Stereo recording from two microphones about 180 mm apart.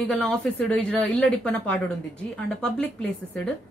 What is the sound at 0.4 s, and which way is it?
A woman's voice, 5° left (ahead or behind).